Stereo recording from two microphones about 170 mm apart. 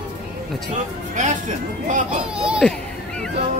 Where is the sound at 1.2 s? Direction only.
45° right (ahead or behind).